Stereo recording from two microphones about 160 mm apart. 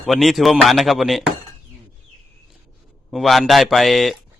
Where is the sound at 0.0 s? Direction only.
Centre (ahead or behind).